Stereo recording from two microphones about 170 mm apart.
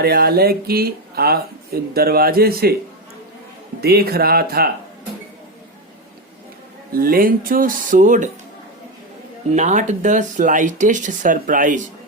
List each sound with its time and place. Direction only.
0.0 s speech: 65° right (ahead or behind)
3.8 s speech: 65° right (ahead or behind)
6.9 s speech: 60° right (ahead or behind)
9.5 s speech: 45° right (ahead or behind)